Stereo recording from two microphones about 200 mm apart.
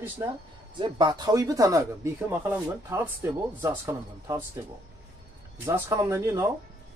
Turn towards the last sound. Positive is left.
turn(degrees=-15)  # may be behind; listen again after turning